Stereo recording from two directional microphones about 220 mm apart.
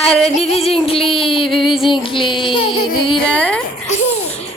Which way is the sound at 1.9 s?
20° left (ahead or behind).